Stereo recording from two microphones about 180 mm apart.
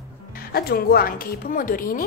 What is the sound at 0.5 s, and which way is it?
A woman's voice, 60° left (ahead or behind).